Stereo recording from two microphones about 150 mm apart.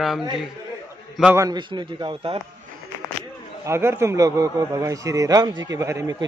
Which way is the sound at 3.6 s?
15° right (ahead or behind).